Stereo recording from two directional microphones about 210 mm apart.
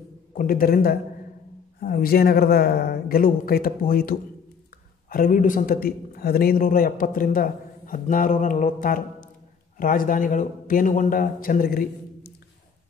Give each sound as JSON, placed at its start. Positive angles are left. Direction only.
{"t": 0.3, "sound": "a man's voice", "side_deg": 40}